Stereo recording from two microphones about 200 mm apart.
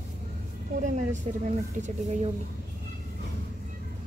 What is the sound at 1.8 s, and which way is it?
Speech, 40° right (ahead or behind).